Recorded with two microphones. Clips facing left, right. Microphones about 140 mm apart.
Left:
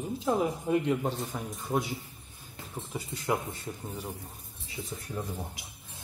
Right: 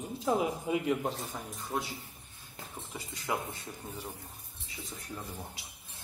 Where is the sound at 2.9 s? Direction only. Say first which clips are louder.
Left 4 dB; centre (ahead or behind).